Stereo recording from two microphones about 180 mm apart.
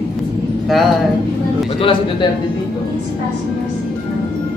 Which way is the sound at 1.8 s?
30° left (ahead or behind).